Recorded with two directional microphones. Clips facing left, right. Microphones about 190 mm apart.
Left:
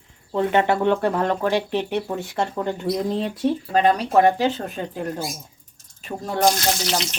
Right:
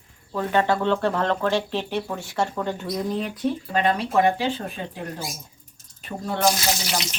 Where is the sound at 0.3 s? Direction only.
20° left (ahead or behind).